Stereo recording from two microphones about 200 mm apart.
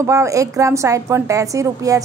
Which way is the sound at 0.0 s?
15° right (ahead or behind).